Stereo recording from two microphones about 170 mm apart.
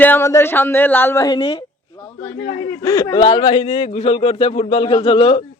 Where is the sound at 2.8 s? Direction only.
20° left (ahead or behind).